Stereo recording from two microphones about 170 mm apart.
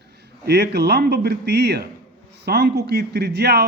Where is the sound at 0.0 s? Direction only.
75° right (ahead or behind).